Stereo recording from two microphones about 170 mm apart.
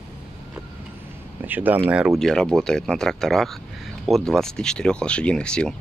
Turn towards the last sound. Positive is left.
turn(degrees=5)  # may be behind; listen again after turning